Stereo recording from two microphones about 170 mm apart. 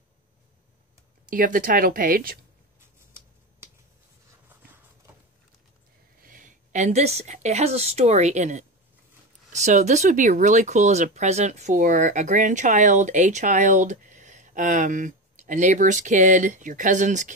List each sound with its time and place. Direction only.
1.3 s speech: 55° right (ahead or behind)
6.2 s a woman's voice: 50° right (ahead or behind)